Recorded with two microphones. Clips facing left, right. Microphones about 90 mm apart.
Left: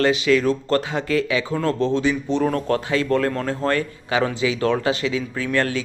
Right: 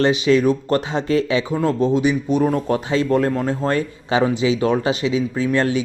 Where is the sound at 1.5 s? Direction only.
15° right (ahead or behind).